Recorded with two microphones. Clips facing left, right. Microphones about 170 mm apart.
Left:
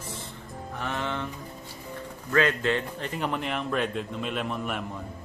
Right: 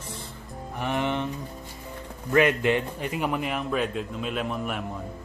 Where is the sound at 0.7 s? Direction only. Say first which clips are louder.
Right 5 dB; 15° right (ahead or behind).